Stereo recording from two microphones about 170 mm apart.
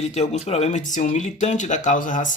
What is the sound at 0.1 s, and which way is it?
Speech, 40° left (ahead or behind).